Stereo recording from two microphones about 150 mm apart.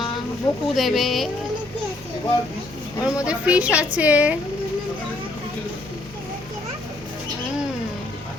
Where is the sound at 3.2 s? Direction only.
10° right (ahead or behind).